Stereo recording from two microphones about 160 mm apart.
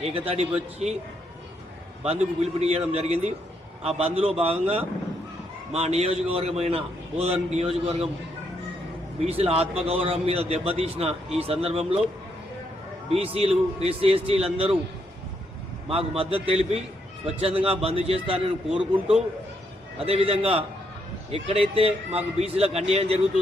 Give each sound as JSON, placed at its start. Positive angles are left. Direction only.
{"t": 0.0, "sound": "a man's voice", "side_deg": -40}
{"t": 2.0, "sound": "a man's voice", "side_deg": -40}
{"t": 9.2, "sound": "a man's voice", "side_deg": -40}
{"t": 13.1, "sound": "a man's voice", "side_deg": -40}
{"t": 15.9, "sound": "a man's voice", "side_deg": -35}